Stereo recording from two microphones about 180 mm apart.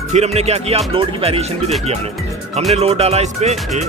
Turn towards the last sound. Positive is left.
turn(degrees=-40)  # may be behind; listen again after turning